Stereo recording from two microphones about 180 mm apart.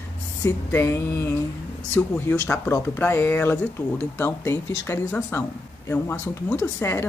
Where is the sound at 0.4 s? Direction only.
15° left (ahead or behind).